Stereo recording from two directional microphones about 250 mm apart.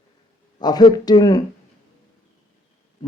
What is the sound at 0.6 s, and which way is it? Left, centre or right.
Speech, centre.